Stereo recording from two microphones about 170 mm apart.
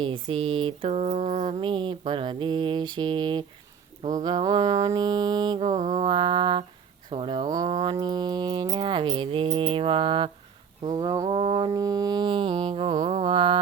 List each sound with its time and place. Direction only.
0.0 s mantra: 30° right (ahead or behind)